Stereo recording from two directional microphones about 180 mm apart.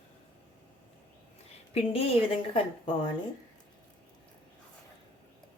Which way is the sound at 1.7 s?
35° left (ahead or behind).